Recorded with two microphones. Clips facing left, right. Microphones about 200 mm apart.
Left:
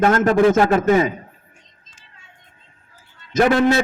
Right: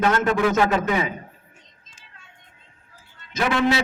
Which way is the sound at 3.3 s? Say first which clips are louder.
Left 6 dB; 50° left (ahead or behind).